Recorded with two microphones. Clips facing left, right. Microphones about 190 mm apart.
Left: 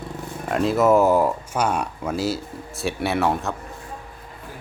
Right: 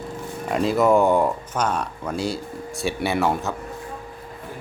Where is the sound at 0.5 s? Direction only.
Centre (ahead or behind).